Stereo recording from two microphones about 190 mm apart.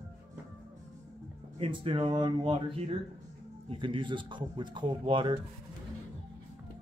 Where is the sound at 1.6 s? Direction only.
25° right (ahead or behind).